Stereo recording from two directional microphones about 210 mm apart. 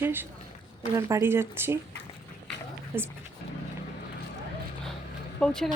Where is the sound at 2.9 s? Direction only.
10° right (ahead or behind).